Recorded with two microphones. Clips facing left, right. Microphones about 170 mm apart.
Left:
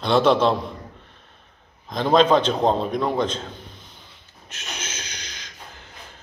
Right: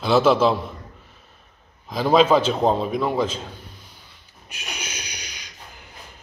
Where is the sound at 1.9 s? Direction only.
5° right (ahead or behind).